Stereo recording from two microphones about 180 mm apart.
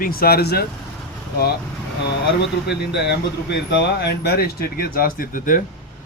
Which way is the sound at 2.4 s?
70° left (ahead or behind).